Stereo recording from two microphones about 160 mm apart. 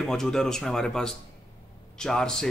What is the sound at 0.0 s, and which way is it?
A man's voice, 5° left (ahead or behind).